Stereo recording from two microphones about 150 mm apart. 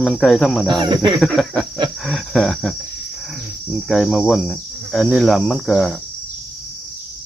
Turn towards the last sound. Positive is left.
turn(degrees=0)  # may be behind; listen again after turning